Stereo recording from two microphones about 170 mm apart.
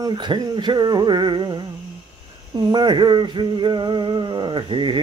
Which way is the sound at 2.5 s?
25° right (ahead or behind).